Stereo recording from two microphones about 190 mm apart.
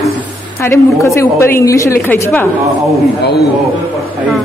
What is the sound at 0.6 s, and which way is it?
A woman's voice, 15° left (ahead or behind).